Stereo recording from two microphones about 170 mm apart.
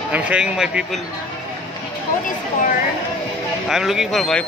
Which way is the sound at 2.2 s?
55° left (ahead or behind).